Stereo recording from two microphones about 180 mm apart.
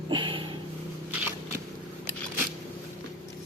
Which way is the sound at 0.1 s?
25° right (ahead or behind).